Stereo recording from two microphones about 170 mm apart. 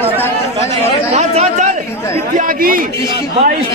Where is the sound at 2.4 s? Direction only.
55° right (ahead or behind).